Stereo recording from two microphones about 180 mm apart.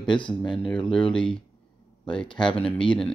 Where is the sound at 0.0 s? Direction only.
25° left (ahead or behind).